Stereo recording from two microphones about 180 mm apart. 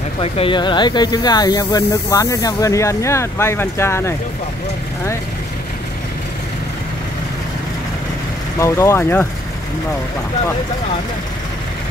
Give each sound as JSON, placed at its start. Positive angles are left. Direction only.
{"t": 0.2, "sound": "speech", "side_deg": 30}
{"t": 8.5, "sound": "speech", "side_deg": 15}